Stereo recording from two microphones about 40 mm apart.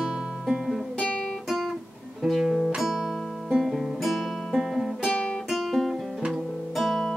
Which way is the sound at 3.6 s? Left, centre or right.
Centre.